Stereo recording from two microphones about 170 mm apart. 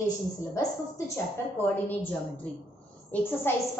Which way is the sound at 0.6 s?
20° left (ahead or behind).